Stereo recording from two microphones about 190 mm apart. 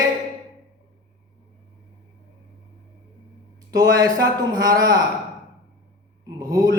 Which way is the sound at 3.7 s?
20° right (ahead or behind).